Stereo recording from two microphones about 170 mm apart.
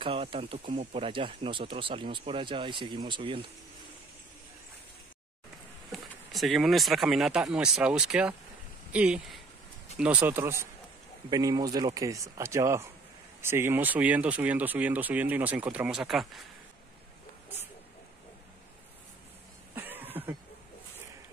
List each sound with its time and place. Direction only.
0.0 s speech: 30° right (ahead or behind)
5.9 s speech: centre (ahead or behind)
19.7 s cough: 10° right (ahead or behind)